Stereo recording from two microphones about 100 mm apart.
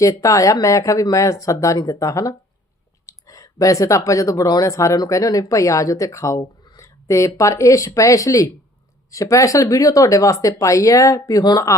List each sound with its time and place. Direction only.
0.0 s speech: 35° left (ahead or behind)